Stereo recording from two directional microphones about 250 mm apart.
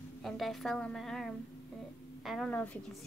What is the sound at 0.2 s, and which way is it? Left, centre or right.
A woman's voice, centre.